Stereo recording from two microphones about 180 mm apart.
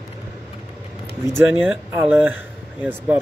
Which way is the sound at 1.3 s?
10° right (ahead or behind).